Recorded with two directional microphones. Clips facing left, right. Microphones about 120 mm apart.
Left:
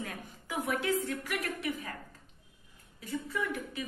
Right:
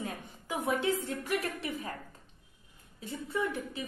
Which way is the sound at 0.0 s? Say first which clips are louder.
Right 2 dB; 25° right (ahead or behind).